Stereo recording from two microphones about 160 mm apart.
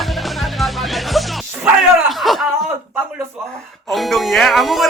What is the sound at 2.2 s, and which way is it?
Chuckle, centre (ahead or behind).